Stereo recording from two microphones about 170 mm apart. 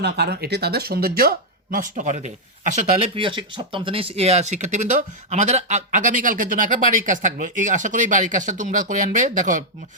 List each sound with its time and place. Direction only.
0.0 s speech: 75° right (ahead or behind); by 3.1 s 45° right (ahead or behind)
3.2 s speech: 30° right (ahead or behind); by 9.6 s 50° right (ahead or behind)